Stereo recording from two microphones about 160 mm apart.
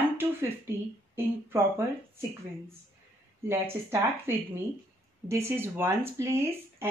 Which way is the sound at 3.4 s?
15° right (ahead or behind).